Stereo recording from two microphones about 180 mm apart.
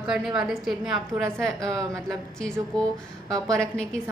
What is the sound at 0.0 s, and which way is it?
A woman's voice, 5° right (ahead or behind).